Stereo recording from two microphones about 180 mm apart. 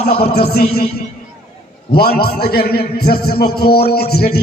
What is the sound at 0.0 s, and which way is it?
Speech, 60° left (ahead or behind).